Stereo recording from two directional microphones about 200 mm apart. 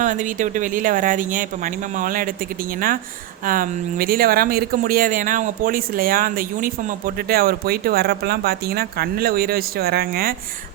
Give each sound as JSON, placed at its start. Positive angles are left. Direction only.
{"t": 0.0, "sound": "speech", "side_deg": -40}